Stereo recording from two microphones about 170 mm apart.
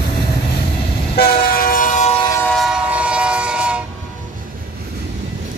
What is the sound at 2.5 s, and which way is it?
Train, 5° right (ahead or behind).